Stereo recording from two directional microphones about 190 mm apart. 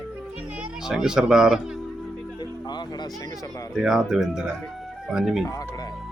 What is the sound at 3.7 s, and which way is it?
Speech, 5° right (ahead or behind).